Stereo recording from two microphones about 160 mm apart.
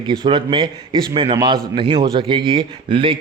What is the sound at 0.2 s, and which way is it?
A man's voice, 30° right (ahead or behind).